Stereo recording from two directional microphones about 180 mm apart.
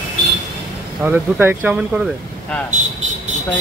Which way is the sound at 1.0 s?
10° right (ahead or behind).